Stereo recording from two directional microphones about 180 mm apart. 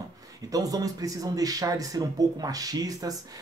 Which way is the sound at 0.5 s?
20° right (ahead or behind).